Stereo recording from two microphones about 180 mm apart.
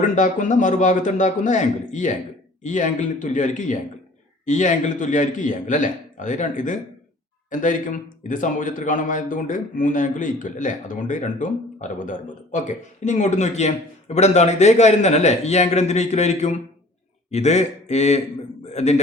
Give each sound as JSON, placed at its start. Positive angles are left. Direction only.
{"t": 0.2, "sound": "a man's voice", "side_deg": 45}